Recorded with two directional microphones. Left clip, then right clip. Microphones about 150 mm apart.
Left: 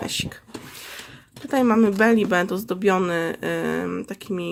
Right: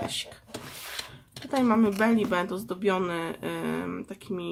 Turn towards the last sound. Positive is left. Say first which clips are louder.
# left 6 dB
turn(degrees=40)  # may be behind; listen again after turning